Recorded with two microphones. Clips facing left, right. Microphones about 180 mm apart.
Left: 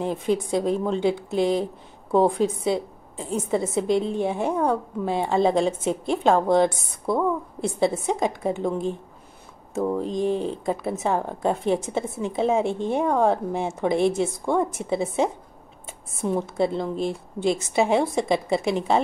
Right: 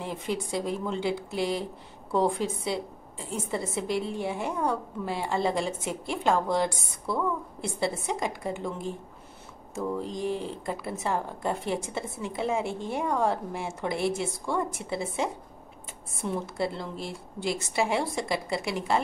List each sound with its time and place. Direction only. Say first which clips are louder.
0.0 s a woman's voice: left 8 dB; 20° left (ahead or behind)
10.0 s a woman's voice: left 7 dB; 20° left (ahead or behind)